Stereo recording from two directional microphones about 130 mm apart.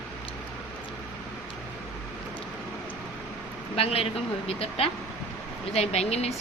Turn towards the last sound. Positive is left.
turn(degrees=55)  # may be behind; listen again after turning